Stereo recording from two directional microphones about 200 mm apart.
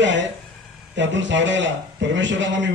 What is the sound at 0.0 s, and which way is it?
A man's voice, 65° right (ahead or behind).